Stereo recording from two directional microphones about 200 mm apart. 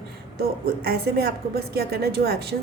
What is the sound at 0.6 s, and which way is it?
A woman's voice, 50° right (ahead or behind).